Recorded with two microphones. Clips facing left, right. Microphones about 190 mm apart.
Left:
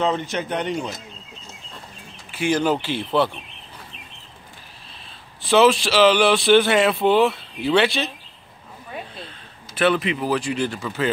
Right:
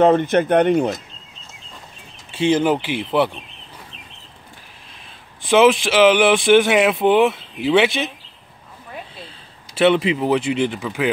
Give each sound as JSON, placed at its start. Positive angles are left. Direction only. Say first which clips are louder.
{"t": 0.0, "sound": "speech", "louder": "right 9 dB", "side_deg": -55}
{"t": 2.3, "sound": "speech", "louder": "right 4 dB", "side_deg": -25}
{"t": 5.5, "sound": "speech", "louder": "right 2 dB", "side_deg": -15}
{"t": 9.8, "sound": "speech", "louder": "right 4 dB", "side_deg": -25}